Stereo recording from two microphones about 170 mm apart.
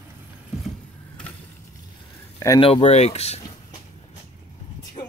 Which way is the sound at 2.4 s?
20° left (ahead or behind).